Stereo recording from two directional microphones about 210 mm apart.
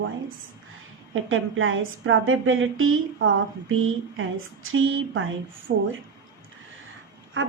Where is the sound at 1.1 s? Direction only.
70° right (ahead or behind).